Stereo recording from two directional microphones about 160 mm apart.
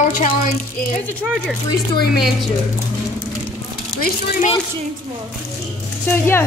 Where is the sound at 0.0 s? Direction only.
55° left (ahead or behind).